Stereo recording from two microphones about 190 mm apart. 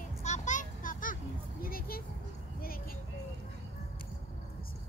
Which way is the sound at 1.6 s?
50° left (ahead or behind).